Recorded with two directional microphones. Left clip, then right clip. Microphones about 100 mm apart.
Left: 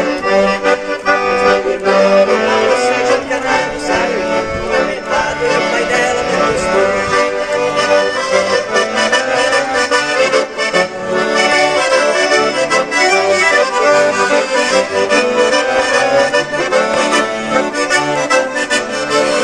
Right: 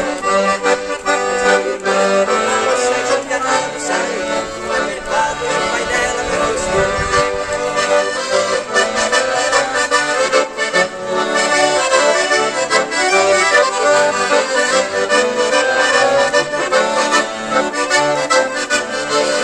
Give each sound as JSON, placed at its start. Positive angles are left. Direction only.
{"t": 1.1, "sound": "accordion", "side_deg": -15}
{"t": 8.7, "sound": "accordion", "side_deg": 0}
{"t": 12.7, "sound": "accordion", "side_deg": 25}